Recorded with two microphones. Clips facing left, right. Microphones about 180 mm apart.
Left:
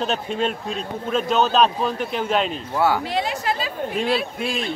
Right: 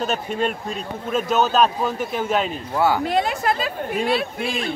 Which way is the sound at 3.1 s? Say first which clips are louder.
Right 3 dB; 50° right (ahead or behind).